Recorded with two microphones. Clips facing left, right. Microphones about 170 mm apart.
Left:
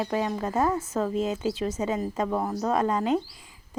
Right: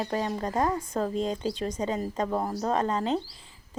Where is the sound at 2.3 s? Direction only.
10° right (ahead or behind).